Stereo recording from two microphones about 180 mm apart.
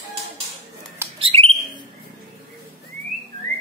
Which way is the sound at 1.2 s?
30° right (ahead or behind).